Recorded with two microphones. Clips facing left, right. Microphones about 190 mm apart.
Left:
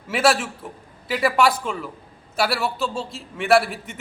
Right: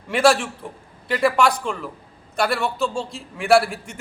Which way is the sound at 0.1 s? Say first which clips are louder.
Right 2 dB; centre (ahead or behind).